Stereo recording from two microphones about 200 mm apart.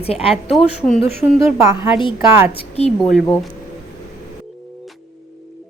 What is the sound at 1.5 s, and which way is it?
Speech, 15° right (ahead or behind).